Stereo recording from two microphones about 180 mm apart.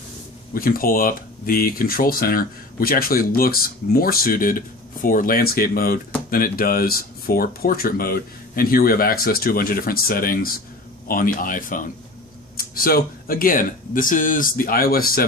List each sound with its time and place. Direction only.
0.6 s speech: 55° left (ahead or behind)